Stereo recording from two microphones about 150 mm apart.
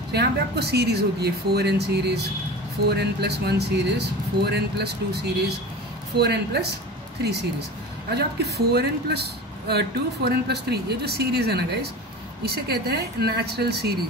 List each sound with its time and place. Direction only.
0.1 s speech: 90° right
8.1 s speech: 90° right